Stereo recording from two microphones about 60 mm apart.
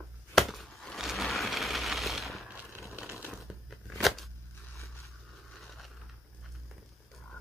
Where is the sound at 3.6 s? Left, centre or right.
Centre.